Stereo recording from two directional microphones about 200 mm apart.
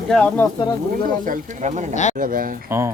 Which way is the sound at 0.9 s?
45° right (ahead or behind).